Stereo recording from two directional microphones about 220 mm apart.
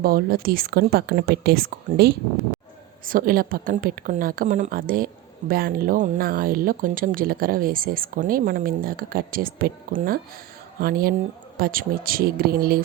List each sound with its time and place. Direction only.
0.0 s speech: 45° right (ahead or behind)